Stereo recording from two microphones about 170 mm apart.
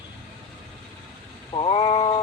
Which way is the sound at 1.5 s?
30° left (ahead or behind).